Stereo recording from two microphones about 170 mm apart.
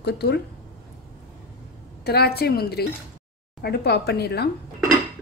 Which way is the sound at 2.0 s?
70° left (ahead or behind).